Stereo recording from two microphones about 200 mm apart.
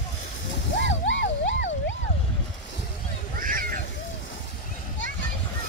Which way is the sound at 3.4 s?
45° right (ahead or behind).